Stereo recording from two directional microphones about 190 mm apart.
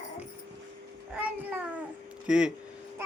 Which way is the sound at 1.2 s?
5° right (ahead or behind).